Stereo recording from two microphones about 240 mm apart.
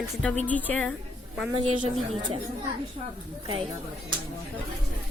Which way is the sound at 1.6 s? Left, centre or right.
Right.